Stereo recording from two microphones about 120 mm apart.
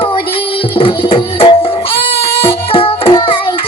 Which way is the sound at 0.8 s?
45° left (ahead or behind).